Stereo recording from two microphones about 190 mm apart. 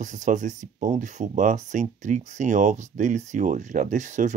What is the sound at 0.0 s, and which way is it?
Speech, 40° right (ahead or behind).